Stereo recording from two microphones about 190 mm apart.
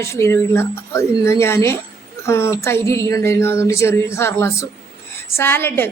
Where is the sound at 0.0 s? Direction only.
15° left (ahead or behind).